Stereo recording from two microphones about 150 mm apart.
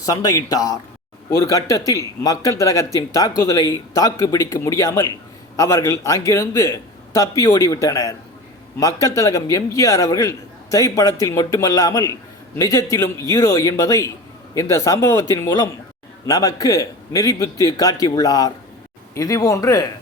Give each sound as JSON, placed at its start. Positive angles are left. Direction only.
{"t": 0.0, "sound": "a man's voice", "side_deg": 25}